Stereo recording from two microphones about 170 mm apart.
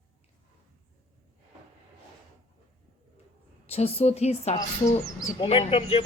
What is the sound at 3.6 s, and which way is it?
A man's voice, 35° left (ahead or behind).